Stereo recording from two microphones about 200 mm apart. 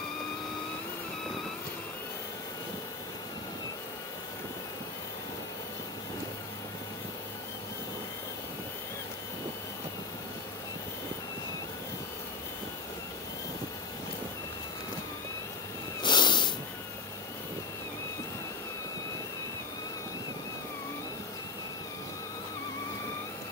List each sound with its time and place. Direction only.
16.0 s snort: 25° left (ahead or behind)